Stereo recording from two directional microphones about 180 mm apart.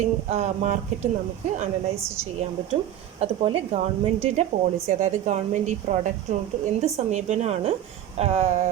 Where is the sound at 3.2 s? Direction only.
35° right (ahead or behind).